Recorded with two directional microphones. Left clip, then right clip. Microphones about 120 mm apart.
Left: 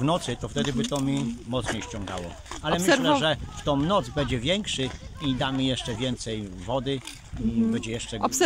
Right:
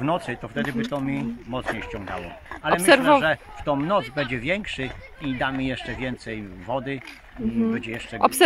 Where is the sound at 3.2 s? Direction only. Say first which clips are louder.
Right 4 dB; 30° left (ahead or behind).